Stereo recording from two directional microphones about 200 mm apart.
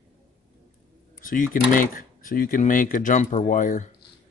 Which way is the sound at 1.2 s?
45° left (ahead or behind).